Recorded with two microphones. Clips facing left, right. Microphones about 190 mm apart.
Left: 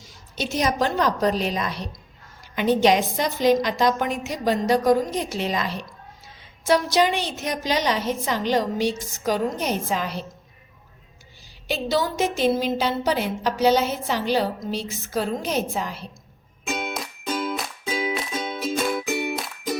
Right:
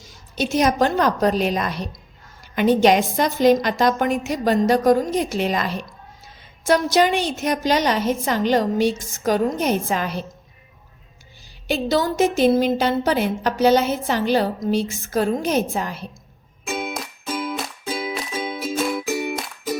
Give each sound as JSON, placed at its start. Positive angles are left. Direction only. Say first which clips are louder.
{"t": 0.0, "sound": "a woman's voice", "louder": "right 5 dB", "side_deg": -50}
{"t": 11.7, "sound": "a woman's voice", "louder": "right 3 dB", "side_deg": -50}
{"t": 16.6, "sound": "music", "louder": "right 2 dB", "side_deg": -5}